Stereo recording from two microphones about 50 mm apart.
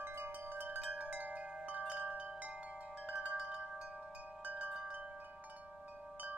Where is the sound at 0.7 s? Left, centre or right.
Right.